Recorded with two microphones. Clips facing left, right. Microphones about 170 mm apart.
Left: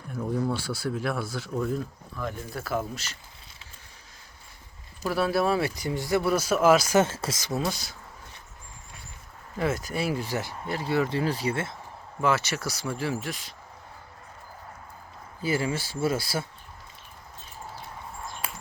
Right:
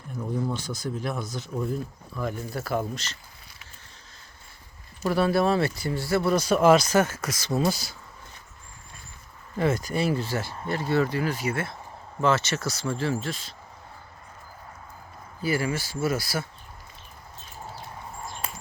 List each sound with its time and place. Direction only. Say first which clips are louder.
0.2 s speech: left 1 dB; 10° left (ahead or behind)
5.0 s speech: right 2 dB; centre (ahead or behind)
6.9 s speech: even; 25° left (ahead or behind)
7.5 s speech: right 5 dB; centre (ahead or behind)
9.6 s speech: right 3 dB; 5° left (ahead or behind)
11.1 s speech: even; 30° left (ahead or behind)
12.2 s speech: right 2 dB; 10° left (ahead or behind)
15.4 s speech: right 1 dB; 25° left (ahead or behind)